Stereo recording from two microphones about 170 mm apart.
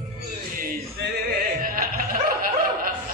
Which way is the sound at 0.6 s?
65° right (ahead or behind).